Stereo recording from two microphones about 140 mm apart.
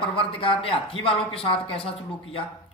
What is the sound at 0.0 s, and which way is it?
Speech, 40° left (ahead or behind).